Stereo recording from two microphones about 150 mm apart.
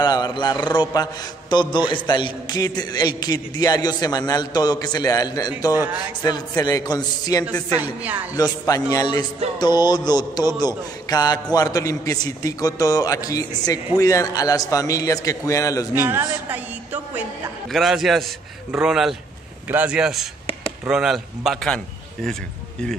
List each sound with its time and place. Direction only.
0.0 s a man's voice: 30° left (ahead or behind)
7.7 s speech: 10° right (ahead or behind)
8.4 s a man's voice: 25° left (ahead or behind)
15.9 s speech: 15° right (ahead or behind)
17.7 s speech: centre (ahead or behind)